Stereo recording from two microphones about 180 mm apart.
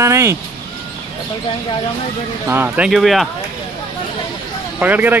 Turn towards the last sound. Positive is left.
turn(degrees=-10)  # may be behind; listen again after turning